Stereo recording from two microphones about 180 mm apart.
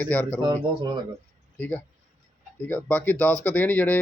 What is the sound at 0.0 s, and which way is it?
Speech, 10° left (ahead or behind).